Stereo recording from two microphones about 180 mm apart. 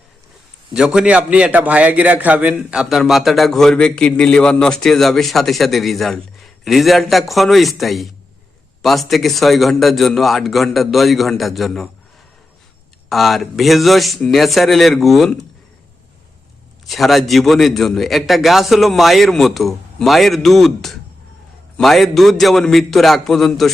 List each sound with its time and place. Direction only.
0.7 s a man's voice: 5° right (ahead or behind)
13.1 s a man's voice: centre (ahead or behind)
16.8 s a man's voice: centre (ahead or behind)